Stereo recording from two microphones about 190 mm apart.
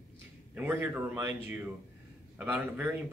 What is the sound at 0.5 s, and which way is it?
Speech, 10° right (ahead or behind).